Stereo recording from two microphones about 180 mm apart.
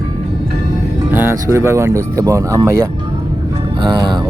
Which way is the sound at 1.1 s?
10° right (ahead or behind).